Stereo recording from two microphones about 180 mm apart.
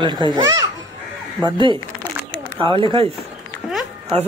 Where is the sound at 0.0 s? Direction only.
25° right (ahead or behind).